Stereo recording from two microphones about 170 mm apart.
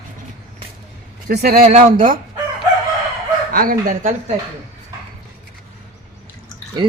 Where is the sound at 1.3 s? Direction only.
65° right (ahead or behind).